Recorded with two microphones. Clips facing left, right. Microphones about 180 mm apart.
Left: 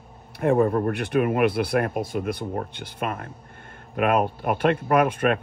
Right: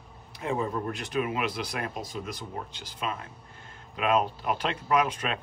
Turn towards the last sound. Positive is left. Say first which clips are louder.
# left 7 dB
turn(degrees=55)  # may be behind; listen again after turning